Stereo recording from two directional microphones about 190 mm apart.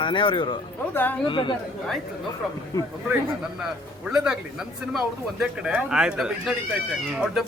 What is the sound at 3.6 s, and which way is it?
Speech, 5° right (ahead or behind).